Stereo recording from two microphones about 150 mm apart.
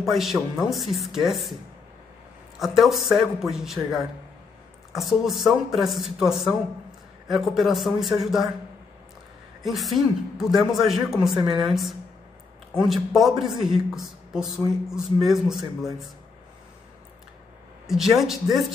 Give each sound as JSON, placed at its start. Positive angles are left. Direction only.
{"t": 0.0, "sound": "speech", "side_deg": 0}
{"t": 2.6, "sound": "speech", "side_deg": 0}
{"t": 9.6, "sound": "speech", "side_deg": 0}
{"t": 11.3, "sound": "a woman's voice", "side_deg": -25}
{"t": 11.6, "sound": "speech", "side_deg": 0}
{"t": 17.8, "sound": "speech", "side_deg": 0}